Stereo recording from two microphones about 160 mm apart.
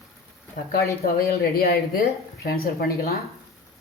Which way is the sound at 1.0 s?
75° left (ahead or behind).